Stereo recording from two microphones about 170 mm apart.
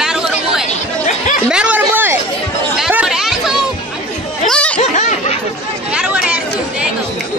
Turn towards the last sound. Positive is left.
turn(degrees=-5)  # may be behind; listen again after turning